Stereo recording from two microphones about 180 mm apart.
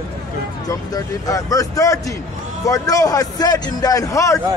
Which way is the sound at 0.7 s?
20° left (ahead or behind).